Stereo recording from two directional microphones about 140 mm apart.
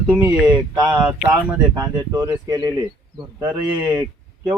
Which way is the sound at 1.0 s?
10° right (ahead or behind).